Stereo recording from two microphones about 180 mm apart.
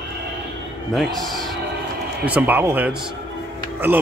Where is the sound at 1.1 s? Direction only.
Centre (ahead or behind).